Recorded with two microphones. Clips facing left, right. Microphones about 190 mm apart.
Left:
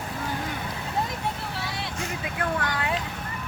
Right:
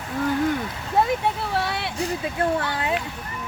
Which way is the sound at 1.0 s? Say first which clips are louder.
Right 9 dB; 70° right (ahead or behind).